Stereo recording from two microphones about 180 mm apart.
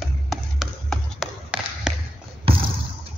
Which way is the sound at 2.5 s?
30° right (ahead or behind).